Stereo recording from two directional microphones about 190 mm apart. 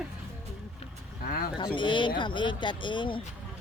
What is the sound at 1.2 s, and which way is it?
Speech, 50° left (ahead or behind).